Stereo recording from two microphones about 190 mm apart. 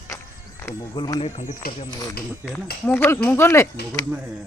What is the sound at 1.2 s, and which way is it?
Speech, 40° left (ahead or behind).